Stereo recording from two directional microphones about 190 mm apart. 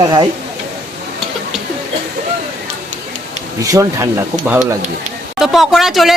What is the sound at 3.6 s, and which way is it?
A woman's voice, 15° right (ahead or behind).